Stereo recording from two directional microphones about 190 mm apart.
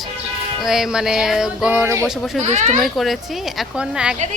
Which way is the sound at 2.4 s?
35° right (ahead or behind).